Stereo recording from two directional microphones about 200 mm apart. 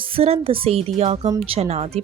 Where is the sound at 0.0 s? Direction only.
30° right (ahead or behind).